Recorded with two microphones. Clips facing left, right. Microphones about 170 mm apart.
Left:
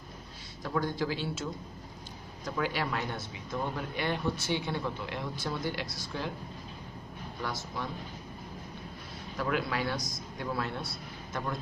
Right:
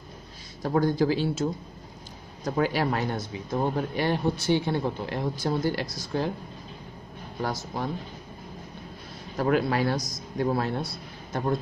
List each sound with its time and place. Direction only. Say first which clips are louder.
0.6 s speech: right 8 dB; 40° right (ahead or behind)
7.4 s speech: right 6 dB; 40° right (ahead or behind)
9.4 s speech: right 8 dB; 45° right (ahead or behind)